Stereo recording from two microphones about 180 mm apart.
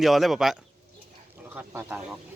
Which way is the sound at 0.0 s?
Centre (ahead or behind).